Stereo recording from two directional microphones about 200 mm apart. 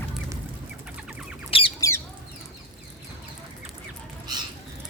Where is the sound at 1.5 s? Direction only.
25° left (ahead or behind).